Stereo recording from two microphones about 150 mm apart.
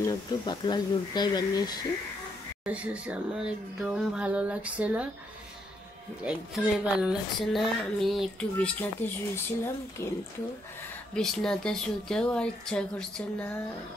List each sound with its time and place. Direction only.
0.0 s speech: 30° left (ahead or behind)
2.6 s speech: 10° right (ahead or behind)
6.2 s a woman's voice: 5° right (ahead or behind); by 10.1 s 15° left (ahead or behind)
11.1 s a woman's voice: 5° left (ahead or behind)